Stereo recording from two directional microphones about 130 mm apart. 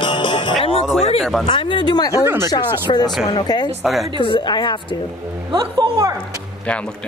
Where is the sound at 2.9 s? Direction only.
40° left (ahead or behind).